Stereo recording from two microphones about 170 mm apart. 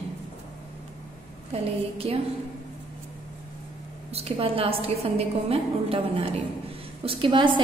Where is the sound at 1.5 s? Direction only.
35° right (ahead or behind).